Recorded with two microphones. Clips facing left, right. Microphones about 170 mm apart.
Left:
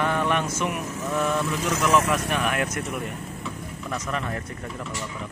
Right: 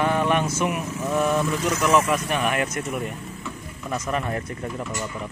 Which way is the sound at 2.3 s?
10° right (ahead or behind).